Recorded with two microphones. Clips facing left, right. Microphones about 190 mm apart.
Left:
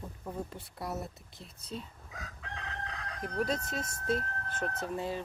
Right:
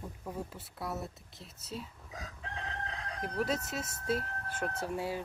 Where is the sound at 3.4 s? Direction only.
5° right (ahead or behind).